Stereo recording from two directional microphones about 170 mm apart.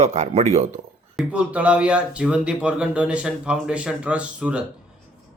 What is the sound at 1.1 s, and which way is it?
Speech, 5° right (ahead or behind).